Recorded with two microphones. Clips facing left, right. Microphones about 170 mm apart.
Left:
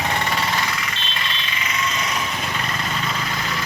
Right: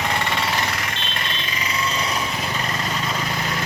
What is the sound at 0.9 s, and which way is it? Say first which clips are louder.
Vehicle: right 1 dB; 55° right (ahead or behind).